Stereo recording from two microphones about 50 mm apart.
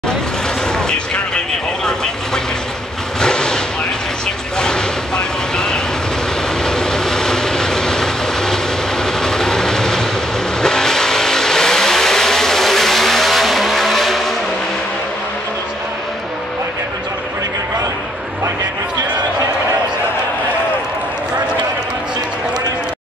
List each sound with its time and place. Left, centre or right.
0.8 s artillery fire: centre
3.2 s vehicle: centre
4.6 s a sound: centre
6.6 s vehicle: centre
9.0 s train: centre
10.6 s vehicle: centre